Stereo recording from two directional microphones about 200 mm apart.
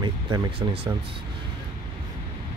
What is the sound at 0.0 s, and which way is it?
Speech, 25° right (ahead or behind).